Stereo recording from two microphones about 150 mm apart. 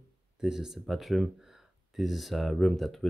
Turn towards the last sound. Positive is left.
turn(degrees=0)  # may be behind; listen again after turning